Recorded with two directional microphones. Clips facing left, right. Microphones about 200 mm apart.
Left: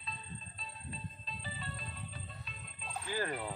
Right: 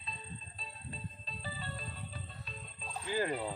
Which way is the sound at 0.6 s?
35° right (ahead or behind).